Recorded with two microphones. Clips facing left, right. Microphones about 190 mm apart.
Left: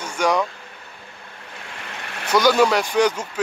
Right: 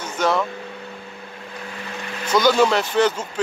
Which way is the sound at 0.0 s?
10° left (ahead or behind).